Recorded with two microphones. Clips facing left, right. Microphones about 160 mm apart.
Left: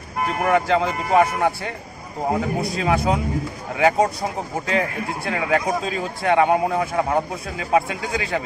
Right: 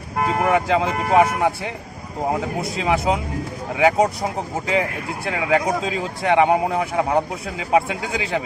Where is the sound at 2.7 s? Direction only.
20° right (ahead or behind).